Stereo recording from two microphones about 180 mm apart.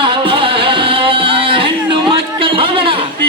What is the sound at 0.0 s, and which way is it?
Music, 30° right (ahead or behind).